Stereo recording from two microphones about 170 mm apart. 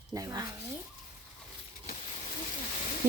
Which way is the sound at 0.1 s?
20° right (ahead or behind).